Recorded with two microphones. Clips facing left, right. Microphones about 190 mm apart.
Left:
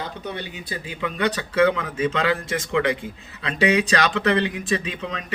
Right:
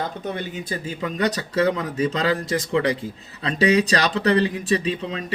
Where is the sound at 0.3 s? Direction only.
45° right (ahead or behind).